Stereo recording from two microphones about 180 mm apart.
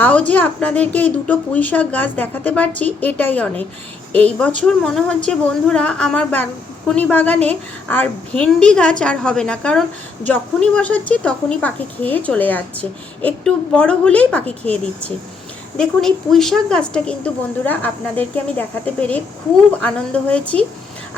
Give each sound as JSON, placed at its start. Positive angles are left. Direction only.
{"t": 0.0, "sound": "a woman's voice", "side_deg": 10}